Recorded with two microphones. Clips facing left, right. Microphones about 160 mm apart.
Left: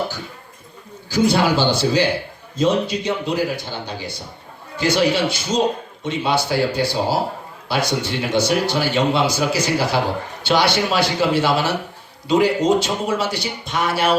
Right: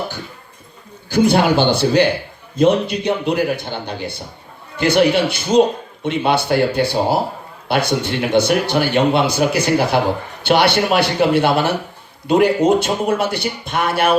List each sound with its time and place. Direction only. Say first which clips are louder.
1.1 s a man's voice: right 3 dB; 55° right (ahead or behind)